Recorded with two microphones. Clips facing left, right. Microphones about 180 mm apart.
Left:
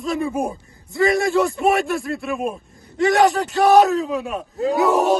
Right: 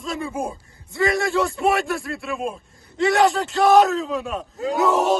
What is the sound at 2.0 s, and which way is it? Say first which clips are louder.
A man's voice: left 3 dB; 20° left (ahead or behind).